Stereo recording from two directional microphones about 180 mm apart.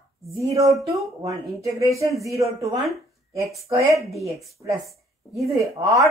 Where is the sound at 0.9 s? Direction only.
15° right (ahead or behind).